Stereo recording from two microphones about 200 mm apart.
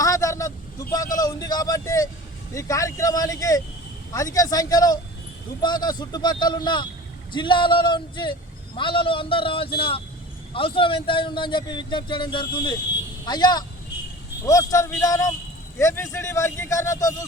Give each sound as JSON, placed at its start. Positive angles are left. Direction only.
{"t": 0.0, "sound": "vehicle", "side_deg": 15}
{"t": 1.1, "sound": "a sound", "side_deg": 20}
{"t": 2.6, "sound": "a man's voice", "side_deg": 15}